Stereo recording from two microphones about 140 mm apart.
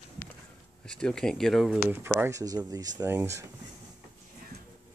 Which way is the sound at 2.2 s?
25° right (ahead or behind).